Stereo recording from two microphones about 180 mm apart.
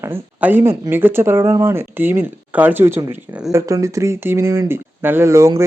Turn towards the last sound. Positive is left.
turn(degrees=-15)  # may be behind; listen again after turning